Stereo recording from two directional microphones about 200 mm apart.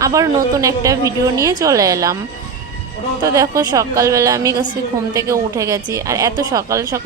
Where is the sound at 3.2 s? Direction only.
15° right (ahead or behind).